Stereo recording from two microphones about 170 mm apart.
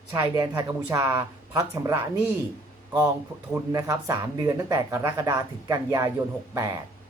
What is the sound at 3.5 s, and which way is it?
Speech, 15° right (ahead or behind).